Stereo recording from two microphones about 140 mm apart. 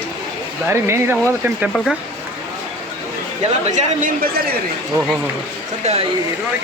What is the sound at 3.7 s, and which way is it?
Speech, 70° right (ahead or behind).